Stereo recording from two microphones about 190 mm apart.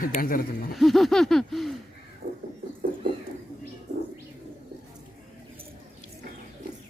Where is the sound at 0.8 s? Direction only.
Centre (ahead or behind).